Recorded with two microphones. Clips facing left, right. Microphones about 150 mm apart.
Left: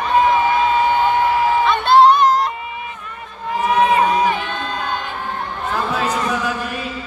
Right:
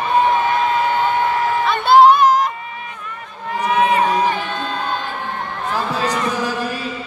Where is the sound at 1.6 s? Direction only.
5° right (ahead or behind).